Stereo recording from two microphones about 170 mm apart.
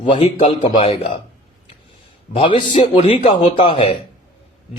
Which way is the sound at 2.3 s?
30° left (ahead or behind).